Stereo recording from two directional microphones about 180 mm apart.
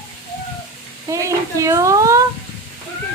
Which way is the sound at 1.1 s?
15° right (ahead or behind).